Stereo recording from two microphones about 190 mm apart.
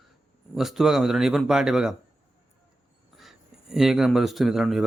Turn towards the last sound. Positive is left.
turn(degrees=0)  # may be behind; listen again after turning